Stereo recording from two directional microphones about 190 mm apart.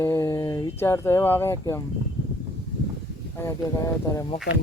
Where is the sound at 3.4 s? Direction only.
15° left (ahead or behind).